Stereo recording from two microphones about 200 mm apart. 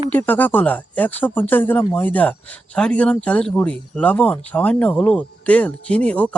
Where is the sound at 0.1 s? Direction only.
10° left (ahead or behind).